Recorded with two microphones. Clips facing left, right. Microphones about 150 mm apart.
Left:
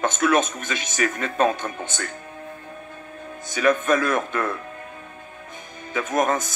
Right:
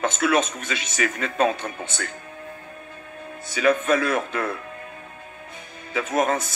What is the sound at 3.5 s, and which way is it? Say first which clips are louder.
Speech: even; 45° left (ahead or behind).